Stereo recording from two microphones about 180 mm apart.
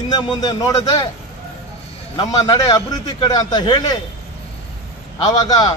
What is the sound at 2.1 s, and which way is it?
A man's voice, 20° left (ahead or behind).